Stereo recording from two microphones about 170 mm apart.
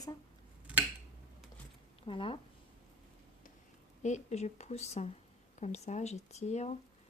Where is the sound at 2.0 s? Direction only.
30° left (ahead or behind).